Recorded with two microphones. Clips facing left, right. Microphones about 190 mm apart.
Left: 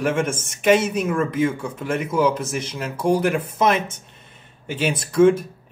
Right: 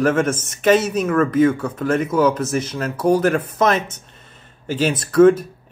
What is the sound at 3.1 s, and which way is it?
Speech, 60° right (ahead or behind).